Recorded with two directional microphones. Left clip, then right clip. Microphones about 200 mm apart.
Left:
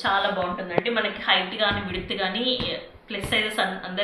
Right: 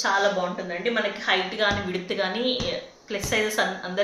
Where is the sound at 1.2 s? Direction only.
60° right (ahead or behind).